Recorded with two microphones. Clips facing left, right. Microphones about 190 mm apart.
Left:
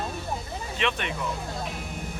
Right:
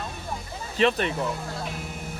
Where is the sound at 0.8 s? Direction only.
35° right (ahead or behind).